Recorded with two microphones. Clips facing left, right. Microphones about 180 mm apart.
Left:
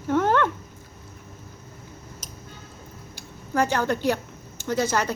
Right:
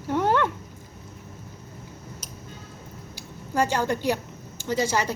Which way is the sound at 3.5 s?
10° right (ahead or behind).